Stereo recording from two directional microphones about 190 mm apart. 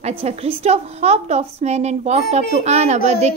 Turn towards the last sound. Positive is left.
turn(degrees=-35)  # may be behind; listen again after turning